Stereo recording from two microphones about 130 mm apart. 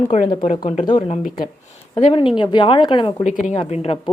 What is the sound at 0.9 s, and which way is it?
A woman's voice, 45° left (ahead or behind).